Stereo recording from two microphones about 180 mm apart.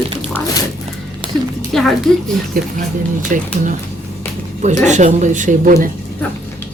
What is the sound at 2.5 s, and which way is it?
Speech, 55° right (ahead or behind).